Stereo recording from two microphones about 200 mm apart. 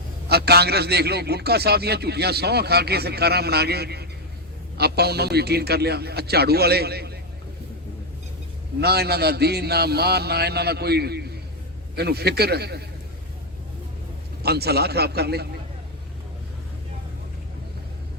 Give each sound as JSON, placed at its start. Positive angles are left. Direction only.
{"t": 0.3, "sound": "a man's voice", "side_deg": -55}
{"t": 8.8, "sound": "a man's voice", "side_deg": -55}
{"t": 14.4, "sound": "a man's voice", "side_deg": -55}